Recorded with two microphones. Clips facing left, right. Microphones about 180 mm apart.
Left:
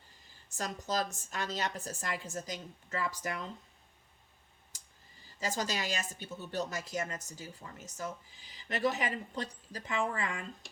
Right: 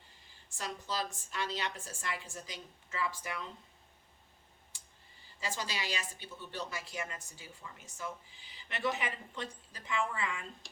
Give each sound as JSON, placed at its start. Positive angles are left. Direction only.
{"t": 0.5, "sound": "a woman's voice", "side_deg": 45}
{"t": 4.7, "sound": "a sound", "side_deg": 40}
{"t": 5.4, "sound": "speech", "side_deg": 45}